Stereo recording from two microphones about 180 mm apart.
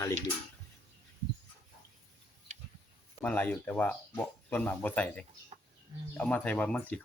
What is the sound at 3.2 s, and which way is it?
Speech, 10° left (ahead or behind).